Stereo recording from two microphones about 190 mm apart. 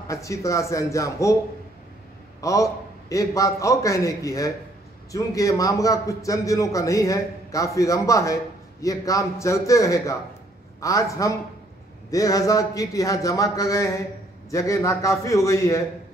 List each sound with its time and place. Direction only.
0.1 s a man's voice: 15° left (ahead or behind)
2.4 s a man's voice: 15° left (ahead or behind)